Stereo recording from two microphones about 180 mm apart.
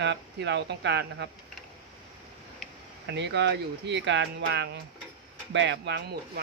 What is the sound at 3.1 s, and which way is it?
Speech, 75° right (ahead or behind).